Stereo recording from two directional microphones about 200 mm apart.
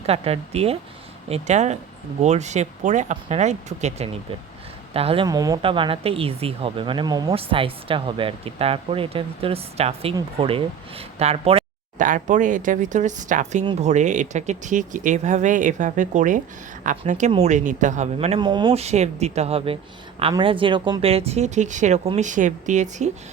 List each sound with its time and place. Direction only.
0.0 s speech: 30° right (ahead or behind)